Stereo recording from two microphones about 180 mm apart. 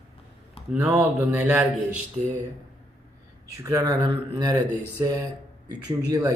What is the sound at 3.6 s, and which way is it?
Speech, 20° right (ahead or behind).